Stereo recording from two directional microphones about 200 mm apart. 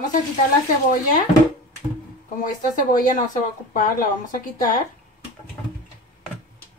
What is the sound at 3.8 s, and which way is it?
Speech, 45° left (ahead or behind).